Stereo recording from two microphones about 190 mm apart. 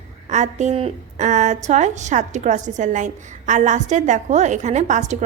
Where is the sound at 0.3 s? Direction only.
40° right (ahead or behind).